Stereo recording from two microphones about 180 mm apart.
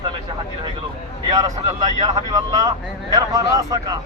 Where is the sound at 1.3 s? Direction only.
20° right (ahead or behind).